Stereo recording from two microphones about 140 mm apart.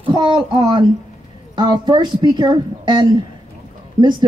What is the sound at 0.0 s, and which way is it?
Speech, 35° right (ahead or behind).